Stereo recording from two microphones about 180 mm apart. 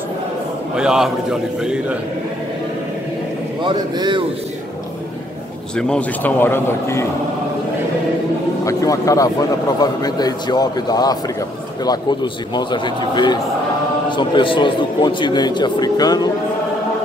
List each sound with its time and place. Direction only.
0.7 s a man's voice: 5° right (ahead or behind)
3.6 s speech: 25° right (ahead or behind)
5.8 s speech: 5° left (ahead or behind)
8.6 s a man's voice: 20° left (ahead or behind)